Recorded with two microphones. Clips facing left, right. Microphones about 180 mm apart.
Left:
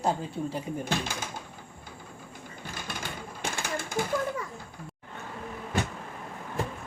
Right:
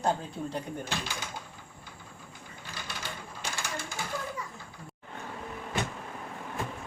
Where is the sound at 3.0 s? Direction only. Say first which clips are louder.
Left 4 dB; 55° left (ahead or behind).